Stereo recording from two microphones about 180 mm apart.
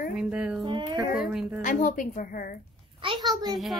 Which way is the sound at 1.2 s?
5° right (ahead or behind).